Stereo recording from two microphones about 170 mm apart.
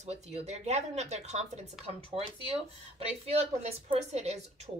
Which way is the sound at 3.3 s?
40° right (ahead or behind).